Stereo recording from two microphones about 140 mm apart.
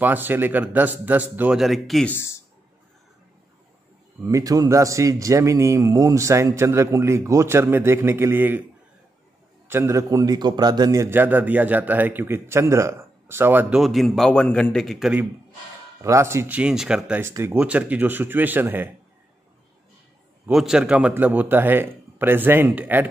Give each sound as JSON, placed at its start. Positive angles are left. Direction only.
{"t": 0.0, "sound": "a man's voice", "side_deg": -15}
{"t": 1.6, "sound": "speech", "side_deg": 0}
{"t": 4.3, "sound": "a man's voice", "side_deg": -25}
{"t": 9.7, "sound": "a man's voice", "side_deg": -20}
{"t": 13.7, "sound": "speech", "side_deg": 0}
{"t": 16.0, "sound": "a man's voice", "side_deg": -20}
{"t": 17.2, "sound": "a man's voice", "side_deg": -20}
{"t": 20.4, "sound": "a man's voice", "side_deg": -5}